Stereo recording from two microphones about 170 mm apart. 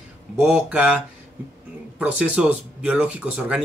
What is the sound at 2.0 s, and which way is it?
Speech, 10° right (ahead or behind).